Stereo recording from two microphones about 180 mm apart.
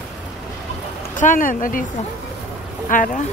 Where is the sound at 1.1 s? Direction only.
45° left (ahead or behind).